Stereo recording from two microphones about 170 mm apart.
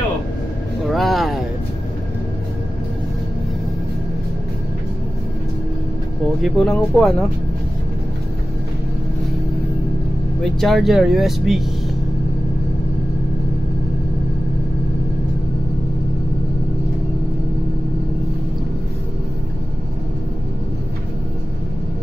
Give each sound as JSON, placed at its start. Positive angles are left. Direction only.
{"t": 0.8, "sound": "vehicle", "side_deg": 0}
{"t": 6.4, "sound": "speech", "side_deg": 5}
{"t": 10.4, "sound": "speech", "side_deg": 0}